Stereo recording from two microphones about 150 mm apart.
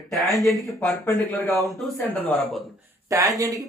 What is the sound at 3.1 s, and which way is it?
Speech, 25° right (ahead or behind).